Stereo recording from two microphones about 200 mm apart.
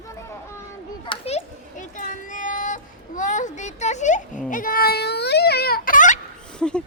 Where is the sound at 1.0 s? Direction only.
25° left (ahead or behind).